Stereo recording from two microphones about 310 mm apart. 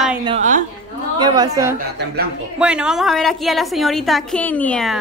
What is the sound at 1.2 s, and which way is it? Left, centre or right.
A woman's voice, centre.